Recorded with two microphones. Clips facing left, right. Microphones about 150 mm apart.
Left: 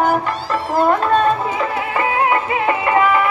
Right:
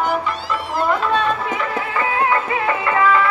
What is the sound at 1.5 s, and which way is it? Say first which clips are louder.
Music: left 2 dB; 25° left (ahead or behind).